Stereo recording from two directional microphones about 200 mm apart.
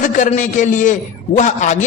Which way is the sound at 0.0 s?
40° left (ahead or behind).